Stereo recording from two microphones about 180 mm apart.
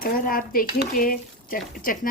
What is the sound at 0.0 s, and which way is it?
A woman's voice, 55° left (ahead or behind).